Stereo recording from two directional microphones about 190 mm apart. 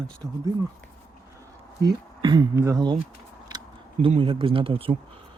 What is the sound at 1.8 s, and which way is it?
Speech, 20° right (ahead or behind).